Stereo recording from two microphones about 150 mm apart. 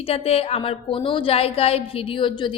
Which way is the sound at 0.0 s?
40° left (ahead or behind).